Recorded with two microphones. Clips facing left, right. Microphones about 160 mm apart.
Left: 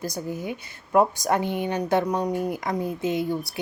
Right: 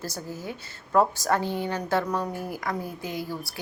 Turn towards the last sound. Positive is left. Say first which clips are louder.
# left 8 dB
turn(degrees=20)  # may be behind; listen again after turning